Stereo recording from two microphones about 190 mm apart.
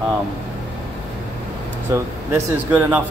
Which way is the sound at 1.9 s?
10° right (ahead or behind).